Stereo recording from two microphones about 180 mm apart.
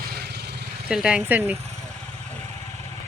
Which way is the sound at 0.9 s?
5° right (ahead or behind).